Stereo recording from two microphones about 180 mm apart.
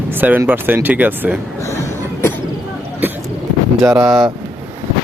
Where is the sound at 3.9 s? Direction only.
5° right (ahead or behind).